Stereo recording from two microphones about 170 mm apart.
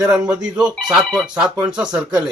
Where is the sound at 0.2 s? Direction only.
5° right (ahead or behind).